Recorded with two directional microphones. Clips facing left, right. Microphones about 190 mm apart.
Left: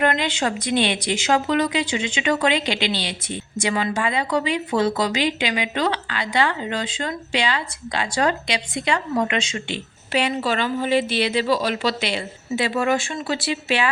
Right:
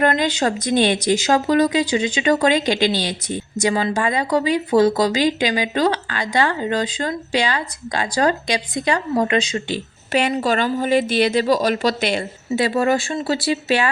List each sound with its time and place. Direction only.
0.0 s speech: 40° right (ahead or behind)